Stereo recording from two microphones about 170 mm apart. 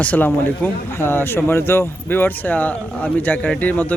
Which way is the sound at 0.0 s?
10° left (ahead or behind).